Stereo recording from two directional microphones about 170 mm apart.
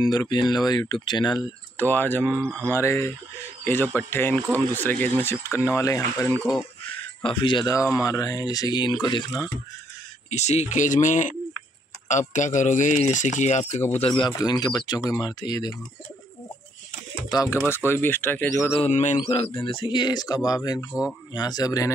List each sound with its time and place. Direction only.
0.0 s speech: 25° left (ahead or behind)
1.8 s speech: 10° left (ahead or behind)
6.5 s a sound: 30° left (ahead or behind)
7.2 s speech: 30° left (ahead or behind)
10.3 s speech: 40° left (ahead or behind)
14.2 s speech: 25° left (ahead or behind)
17.3 s speech: 20° left (ahead or behind)
18.9 s speech: 45° left (ahead or behind)
19.6 s speech: 30° left (ahead or behind)